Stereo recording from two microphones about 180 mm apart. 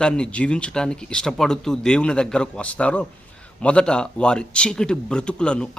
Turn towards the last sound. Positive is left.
turn(degrees=5)  # may be behind; listen again after turning